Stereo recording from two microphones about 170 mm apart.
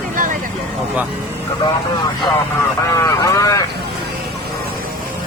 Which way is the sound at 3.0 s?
20° left (ahead or behind).